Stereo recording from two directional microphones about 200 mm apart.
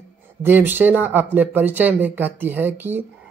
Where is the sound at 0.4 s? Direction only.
10° right (ahead or behind).